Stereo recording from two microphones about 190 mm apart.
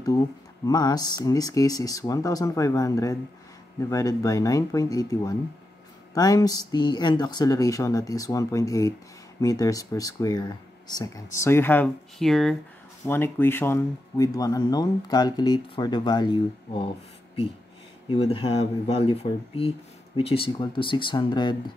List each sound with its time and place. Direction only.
0.7 s speech: 20° left (ahead or behind)
18.0 s speech: 25° left (ahead or behind)